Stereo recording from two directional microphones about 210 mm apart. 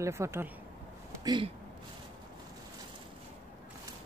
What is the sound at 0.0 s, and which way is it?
Speech, 15° right (ahead or behind).